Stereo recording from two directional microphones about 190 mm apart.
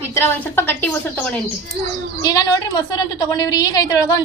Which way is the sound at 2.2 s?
20° left (ahead or behind).